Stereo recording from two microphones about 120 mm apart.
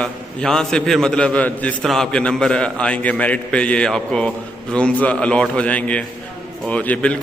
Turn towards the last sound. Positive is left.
turn(degrees=10)  # may be behind; listen again after turning